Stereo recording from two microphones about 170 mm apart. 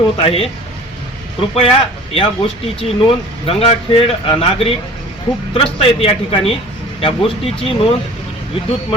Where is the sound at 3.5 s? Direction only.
35° left (ahead or behind).